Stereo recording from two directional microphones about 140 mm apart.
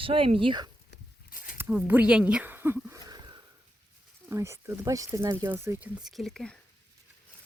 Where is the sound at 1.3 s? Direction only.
80° left.